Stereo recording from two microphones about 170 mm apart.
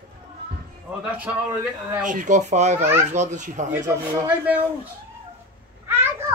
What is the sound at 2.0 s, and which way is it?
Speech, 50° right (ahead or behind).